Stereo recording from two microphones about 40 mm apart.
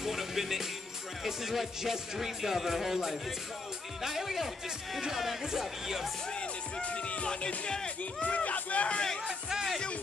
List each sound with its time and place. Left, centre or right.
0.0 s music: centre
6.3 s music: left
7.2 s speech: left
8.0 s speech: left